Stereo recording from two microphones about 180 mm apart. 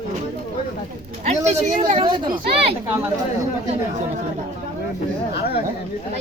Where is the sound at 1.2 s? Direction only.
40° right (ahead or behind).